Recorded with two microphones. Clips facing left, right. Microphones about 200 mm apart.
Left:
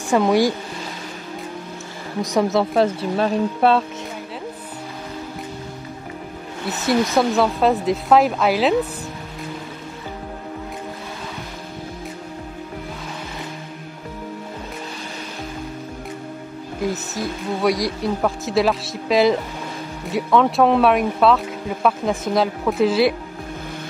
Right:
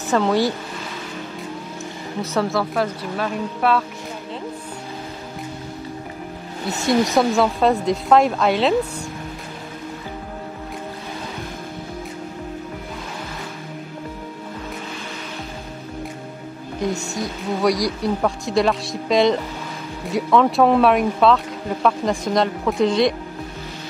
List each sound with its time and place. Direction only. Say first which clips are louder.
0.1 s speech: left 2 dB; 10° left (ahead or behind)
2.2 s speech: left 3 dB; 15° left (ahead or behind)
2.7 s a woman's voice: left 5 dB; 25° left (ahead or behind)
6.7 s speech: right 1 dB; centre (ahead or behind)
16.8 s speech: even; 5° left (ahead or behind)